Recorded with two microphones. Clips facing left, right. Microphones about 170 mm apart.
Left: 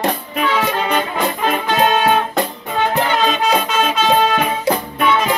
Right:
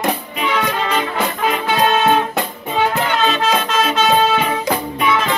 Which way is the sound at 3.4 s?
10° left (ahead or behind).